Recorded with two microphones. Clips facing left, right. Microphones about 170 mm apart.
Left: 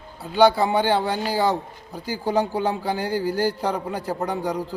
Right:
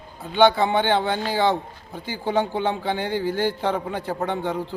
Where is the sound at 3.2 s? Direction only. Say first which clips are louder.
Left 1 dB; 40° left (ahead or behind).